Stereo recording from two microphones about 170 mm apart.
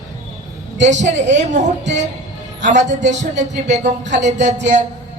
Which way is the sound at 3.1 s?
90° right.